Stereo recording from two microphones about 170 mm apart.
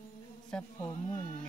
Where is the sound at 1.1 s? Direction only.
50° left (ahead or behind).